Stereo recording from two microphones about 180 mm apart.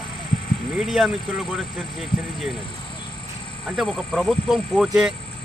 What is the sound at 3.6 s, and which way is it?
Speech, centre (ahead or behind).